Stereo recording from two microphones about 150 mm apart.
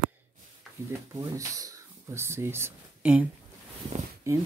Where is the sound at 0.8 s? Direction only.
15° right (ahead or behind).